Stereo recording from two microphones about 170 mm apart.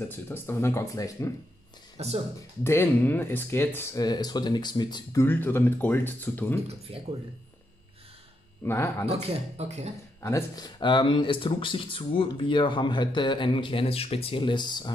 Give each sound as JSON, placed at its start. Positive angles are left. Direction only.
{"t": 0.3, "sound": "speech", "side_deg": 15}
{"t": 2.0, "sound": "speech", "side_deg": -40}
{"t": 2.6, "sound": "speech", "side_deg": 15}
{"t": 5.2, "sound": "speech", "side_deg": 10}
{"t": 8.6, "sound": "speech", "side_deg": 15}
{"t": 9.6, "sound": "speech", "side_deg": -40}
{"t": 10.2, "sound": "speech", "side_deg": 20}